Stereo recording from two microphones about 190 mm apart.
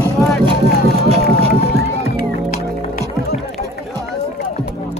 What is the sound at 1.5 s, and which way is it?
Music, 55° left (ahead or behind).